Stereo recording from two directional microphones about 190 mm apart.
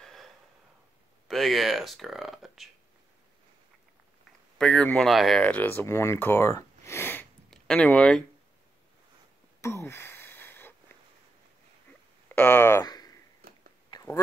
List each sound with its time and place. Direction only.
0.0 s a sound: centre (ahead or behind)
1.2 s speech: centre (ahead or behind)
4.6 s speech: 5° left (ahead or behind)
9.6 s a sound: 15° left (ahead or behind)
12.4 s speech: 15° left (ahead or behind)
13.4 s whispering: 50° right (ahead or behind)